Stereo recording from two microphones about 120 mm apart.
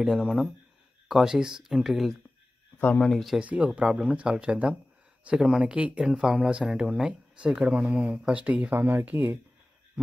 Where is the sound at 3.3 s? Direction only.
10° right (ahead or behind).